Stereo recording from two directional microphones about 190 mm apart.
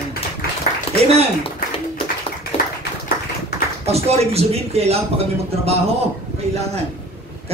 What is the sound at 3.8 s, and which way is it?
A man's voice, 35° right (ahead or behind).